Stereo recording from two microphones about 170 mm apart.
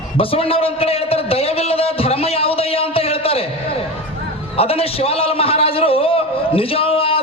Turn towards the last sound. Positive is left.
turn(degrees=35)  # may be behind; listen again after turning